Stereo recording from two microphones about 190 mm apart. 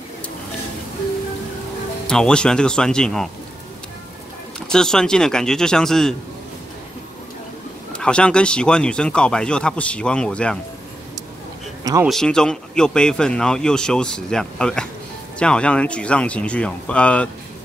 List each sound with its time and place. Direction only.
2.0 s speech: 5° left (ahead or behind)
4.6 s speech: 5° left (ahead or behind)
7.9 s speech: 5° left (ahead or behind)
11.8 s speech: 15° right (ahead or behind)
12.1 s speech: 5° left (ahead or behind)